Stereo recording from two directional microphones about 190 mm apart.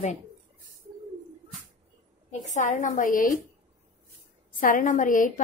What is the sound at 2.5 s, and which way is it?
Speech, 40° left (ahead or behind).